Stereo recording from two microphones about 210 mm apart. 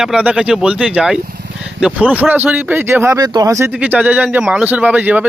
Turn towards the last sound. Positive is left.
turn(degrees=-5)  # may be behind; listen again after turning